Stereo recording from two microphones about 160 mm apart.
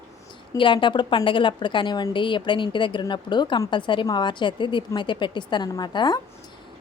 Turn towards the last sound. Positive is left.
turn(degrees=30)  # may be behind; listen again after turning